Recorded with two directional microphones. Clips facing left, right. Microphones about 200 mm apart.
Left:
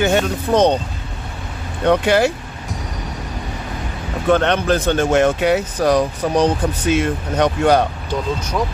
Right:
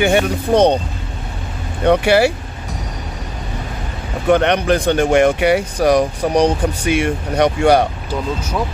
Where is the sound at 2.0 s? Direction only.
10° right (ahead or behind).